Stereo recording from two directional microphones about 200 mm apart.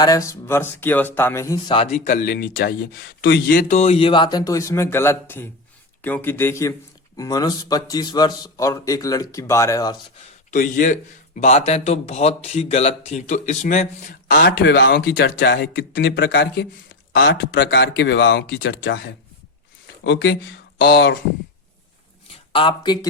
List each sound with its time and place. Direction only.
0.0 s a man's voice: 15° left (ahead or behind)
2.0 s speech: 45° left (ahead or behind)
3.2 s a man's voice: 60° left (ahead or behind); by 10.0 s 15° left (ahead or behind)
10.5 s a man's voice: 40° left (ahead or behind)
22.5 s speech: 25° left (ahead or behind)